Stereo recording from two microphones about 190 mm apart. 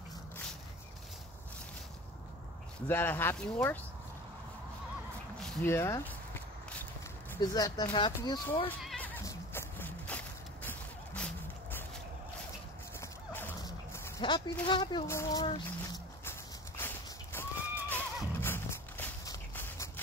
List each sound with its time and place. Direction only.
2.9 s speech: 10° left (ahead or behind)
5.4 s walk: 5° left (ahead or behind)
7.3 s speech: 20° left (ahead or behind)
8.8 s horse: 5° left (ahead or behind)
13.0 s horse: 10° left (ahead or behind)
14.2 s speech: 25° left (ahead or behind)
15.0 s speech: 15° left (ahead or behind)
15.4 s speech: 25° left (ahead or behind)
16.3 s horse: 10° left (ahead or behind)